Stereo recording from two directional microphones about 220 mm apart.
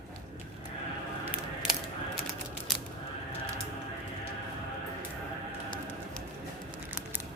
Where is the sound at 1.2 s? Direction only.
5° right (ahead or behind).